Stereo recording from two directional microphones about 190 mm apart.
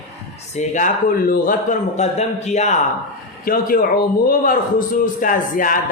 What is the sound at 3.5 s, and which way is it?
A man's voice, 50° left (ahead or behind).